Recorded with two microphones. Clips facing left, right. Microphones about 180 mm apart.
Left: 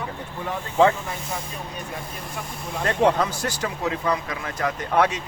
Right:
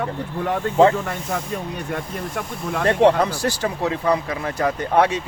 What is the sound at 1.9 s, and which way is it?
Speech, 65° right (ahead or behind).